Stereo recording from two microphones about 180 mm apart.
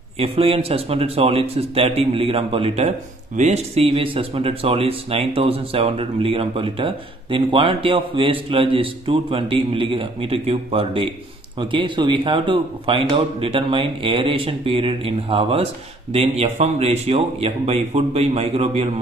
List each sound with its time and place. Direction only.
0.2 s speech: 30° right (ahead or behind)